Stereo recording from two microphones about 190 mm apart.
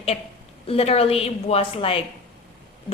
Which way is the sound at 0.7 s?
30° left (ahead or behind).